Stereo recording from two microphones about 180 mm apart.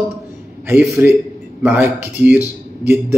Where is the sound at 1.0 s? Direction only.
15° right (ahead or behind).